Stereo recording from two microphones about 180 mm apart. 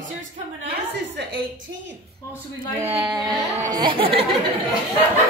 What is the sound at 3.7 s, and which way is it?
Speech, 30° right (ahead or behind).